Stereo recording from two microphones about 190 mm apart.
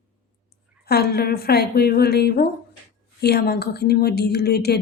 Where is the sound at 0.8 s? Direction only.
55° left (ahead or behind).